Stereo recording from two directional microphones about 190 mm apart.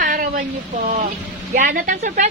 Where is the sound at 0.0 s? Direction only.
45° right (ahead or behind).